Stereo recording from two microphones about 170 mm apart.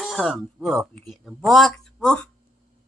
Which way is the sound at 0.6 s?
Centre (ahead or behind).